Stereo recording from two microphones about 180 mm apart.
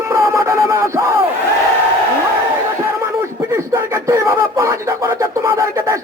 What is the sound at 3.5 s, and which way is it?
Speech, 15° right (ahead or behind).